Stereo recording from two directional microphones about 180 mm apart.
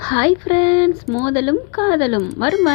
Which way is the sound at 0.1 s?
20° left (ahead or behind).